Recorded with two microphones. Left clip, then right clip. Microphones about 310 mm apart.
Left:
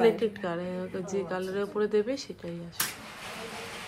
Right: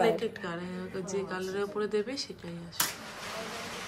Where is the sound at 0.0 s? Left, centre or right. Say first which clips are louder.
Left 3 dB; centre.